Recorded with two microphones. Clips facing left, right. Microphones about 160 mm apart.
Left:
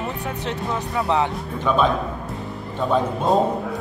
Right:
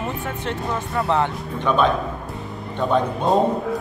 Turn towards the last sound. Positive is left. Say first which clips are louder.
# even
turn(degrees=0)  # may be behind; listen again after turning